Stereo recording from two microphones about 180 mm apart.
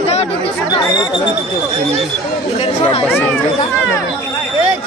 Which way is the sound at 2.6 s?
35° left (ahead or behind).